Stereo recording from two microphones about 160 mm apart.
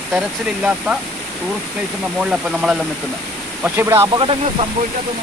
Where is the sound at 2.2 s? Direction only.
5° right (ahead or behind).